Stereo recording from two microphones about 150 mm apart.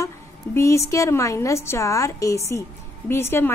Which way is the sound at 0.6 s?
20° left (ahead or behind).